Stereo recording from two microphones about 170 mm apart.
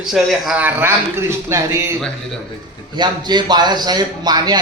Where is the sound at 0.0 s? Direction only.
Centre (ahead or behind).